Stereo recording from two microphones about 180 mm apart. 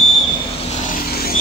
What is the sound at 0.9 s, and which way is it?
Vehicle, 55° left (ahead or behind).